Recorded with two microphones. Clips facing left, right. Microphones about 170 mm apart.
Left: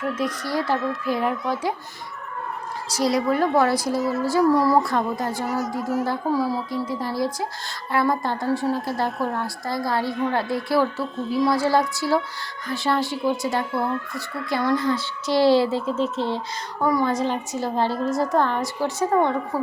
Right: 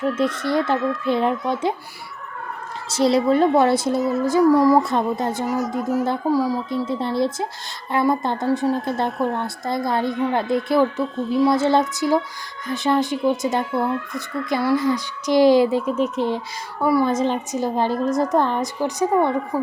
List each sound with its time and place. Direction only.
0.0 s speech: 25° right (ahead or behind)
2.9 s speech: 25° right (ahead or behind)
3.9 s speech: centre (ahead or behind)
4.2 s speech: 20° right (ahead or behind)
5.5 s speech: centre (ahead or behind)
6.3 s a woman's voice: 10° right (ahead or behind)
6.8 s speech: 25° right (ahead or behind)
9.0 s speech: centre (ahead or behind)
9.3 s a woman's voice: 20° right (ahead or behind)